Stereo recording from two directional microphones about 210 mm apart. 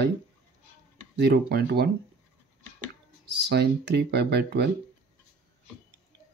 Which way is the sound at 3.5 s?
50° right (ahead or behind).